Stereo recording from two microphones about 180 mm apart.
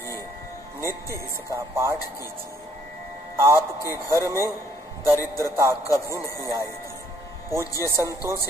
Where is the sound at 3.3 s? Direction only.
15° right (ahead or behind).